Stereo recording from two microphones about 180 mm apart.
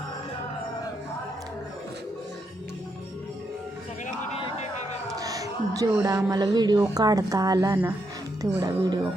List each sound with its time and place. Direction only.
4.4 s music: 35° left (ahead or behind)
5.1 s a sound: 20° right (ahead or behind)
6.0 s speech: 20° right (ahead or behind)